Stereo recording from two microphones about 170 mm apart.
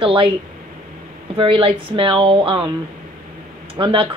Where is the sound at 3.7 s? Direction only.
30° right (ahead or behind).